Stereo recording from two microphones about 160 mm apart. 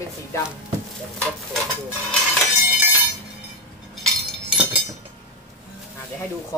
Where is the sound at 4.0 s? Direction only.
5° right (ahead or behind).